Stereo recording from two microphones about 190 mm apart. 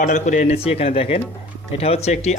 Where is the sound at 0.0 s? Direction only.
40° left (ahead or behind).